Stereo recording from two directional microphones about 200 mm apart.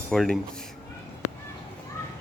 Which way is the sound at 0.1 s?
5° left (ahead or behind).